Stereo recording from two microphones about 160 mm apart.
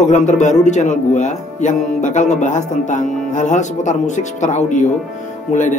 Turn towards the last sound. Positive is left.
turn(degrees=50)  # may be behind; listen again after turning